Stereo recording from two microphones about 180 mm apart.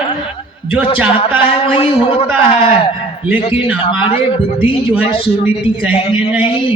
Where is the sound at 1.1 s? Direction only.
30° left (ahead or behind).